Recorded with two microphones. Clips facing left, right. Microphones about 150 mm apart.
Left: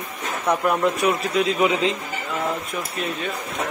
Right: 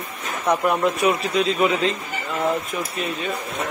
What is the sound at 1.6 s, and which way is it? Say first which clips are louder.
Speech: even; 15° left (ahead or behind).